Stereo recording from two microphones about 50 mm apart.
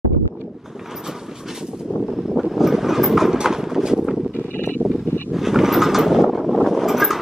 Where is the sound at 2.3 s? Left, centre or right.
Centre.